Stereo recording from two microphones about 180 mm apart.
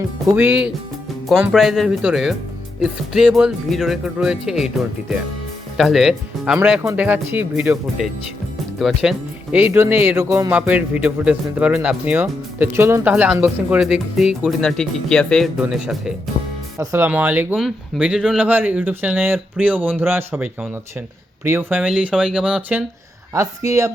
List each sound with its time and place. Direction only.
0.3 s speech: 10° right (ahead or behind)
16.4 s music: 30° left (ahead or behind)
16.7 s speech: 15° right (ahead or behind)
23.3 s speech: 15° right (ahead or behind)